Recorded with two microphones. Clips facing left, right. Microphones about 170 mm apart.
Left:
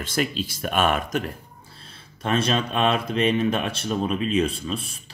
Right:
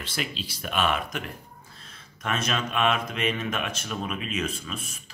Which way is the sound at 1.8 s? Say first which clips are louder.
Left 5 dB; 30° left (ahead or behind).